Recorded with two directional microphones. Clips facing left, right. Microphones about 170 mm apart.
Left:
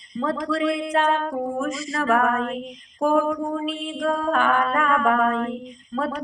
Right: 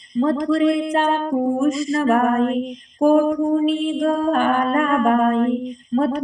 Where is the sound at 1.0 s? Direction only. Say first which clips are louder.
Right 4 dB; 20° right (ahead or behind).